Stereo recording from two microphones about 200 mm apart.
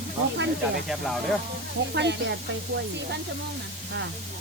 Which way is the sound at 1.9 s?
60° right (ahead or behind).